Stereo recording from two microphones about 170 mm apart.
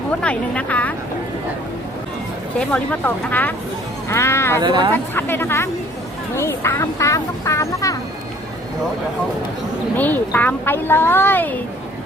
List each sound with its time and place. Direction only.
0.2 s speech: 5° left (ahead or behind)
2.6 s speech: 10° left (ahead or behind)
4.6 s speech: 25° right (ahead or behind)
5.1 s speech: 15° left (ahead or behind)
10.0 s speech: 10° left (ahead or behind)